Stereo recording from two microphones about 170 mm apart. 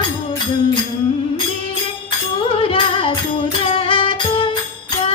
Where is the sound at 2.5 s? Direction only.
30° left (ahead or behind).